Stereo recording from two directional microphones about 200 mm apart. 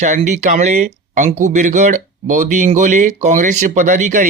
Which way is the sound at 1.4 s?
40° right (ahead or behind).